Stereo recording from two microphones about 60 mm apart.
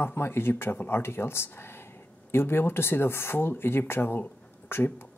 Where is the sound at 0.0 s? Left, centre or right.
Left.